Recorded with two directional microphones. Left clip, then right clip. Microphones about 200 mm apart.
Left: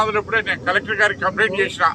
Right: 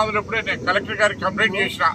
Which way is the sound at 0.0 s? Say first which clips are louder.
Left 2 dB; centre (ahead or behind).